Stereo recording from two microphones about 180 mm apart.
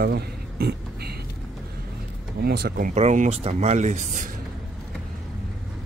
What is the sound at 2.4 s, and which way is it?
Speech, 60° right (ahead or behind).